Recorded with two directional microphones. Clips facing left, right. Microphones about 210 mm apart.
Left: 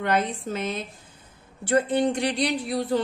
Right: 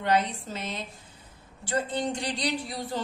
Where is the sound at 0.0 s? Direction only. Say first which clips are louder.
Left 1 dB; 55° left (ahead or behind).